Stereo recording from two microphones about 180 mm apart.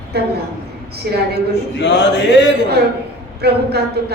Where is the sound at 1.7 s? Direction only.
75° left (ahead or behind).